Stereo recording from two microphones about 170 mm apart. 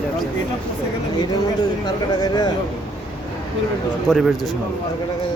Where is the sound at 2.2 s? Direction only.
25° left (ahead or behind).